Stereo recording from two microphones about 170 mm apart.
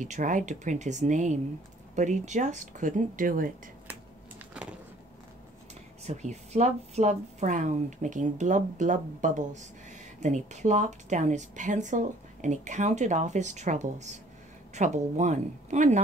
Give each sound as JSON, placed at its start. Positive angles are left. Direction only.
{"t": 0.0, "sound": "a woman's voice", "side_deg": -50}
{"t": 6.0, "sound": "a woman's voice", "side_deg": -40}